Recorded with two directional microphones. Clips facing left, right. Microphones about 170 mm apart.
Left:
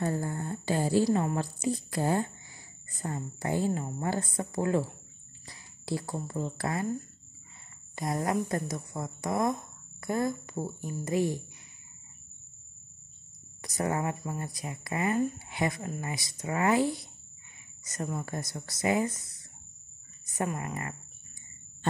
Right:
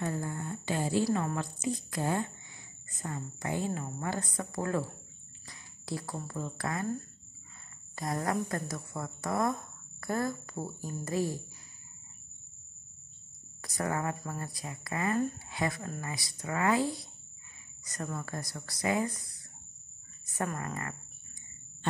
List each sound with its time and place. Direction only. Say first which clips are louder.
0.0 s a woman's voice: left 3 dB; 35° left (ahead or behind)
7.9 s speech: left 3 dB; 20° left (ahead or behind)
13.8 s speech: left 2 dB; 20° left (ahead or behind)
16.8 s speech: left 3 dB; centre (ahead or behind)
17.9 s speech: left 3 dB; 20° left (ahead or behind)
20.2 s speech: left 2 dB; 15° left (ahead or behind)